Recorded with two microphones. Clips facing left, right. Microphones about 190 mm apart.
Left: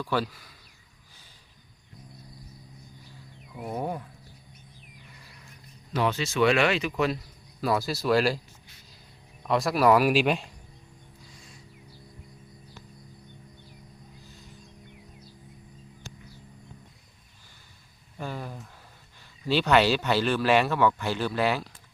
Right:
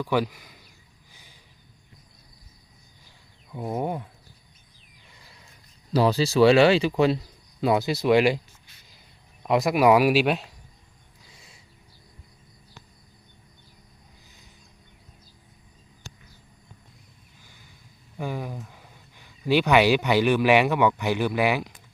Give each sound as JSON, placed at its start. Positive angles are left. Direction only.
{"t": 0.0, "sound": "speech", "side_deg": -15}
{"t": 3.5, "sound": "a sound", "side_deg": -25}
{"t": 5.9, "sound": "speech", "side_deg": -35}
{"t": 7.6, "sound": "a sound", "side_deg": -20}
{"t": 9.5, "sound": "speech", "side_deg": -20}
{"t": 18.2, "sound": "speech", "side_deg": -15}